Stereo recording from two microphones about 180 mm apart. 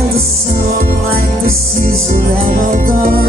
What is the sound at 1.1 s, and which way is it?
Music, 55° right (ahead or behind).